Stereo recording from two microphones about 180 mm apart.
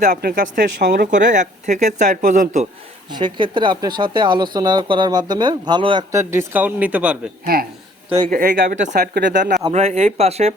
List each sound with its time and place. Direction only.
0.0 s speech: 55° right (ahead or behind)
3.1 s speech: 25° right (ahead or behind)
6.1 s speech: 15° right (ahead or behind)
7.4 s speech: 55° right (ahead or behind)
9.0 s speech: 65° right (ahead or behind)
9.7 s speech: 40° right (ahead or behind)